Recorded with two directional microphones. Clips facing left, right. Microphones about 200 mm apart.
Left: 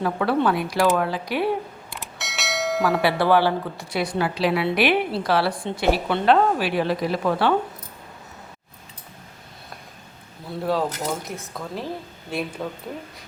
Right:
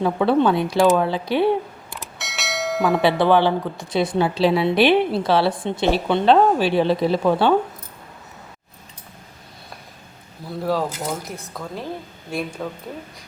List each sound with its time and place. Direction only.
0.0 s a woman's voice: 20° right (ahead or behind)
1.9 s church bell: centre (ahead or behind)
3.0 s a woman's voice: 20° right (ahead or behind)
10.6 s a woman's voice: centre (ahead or behind)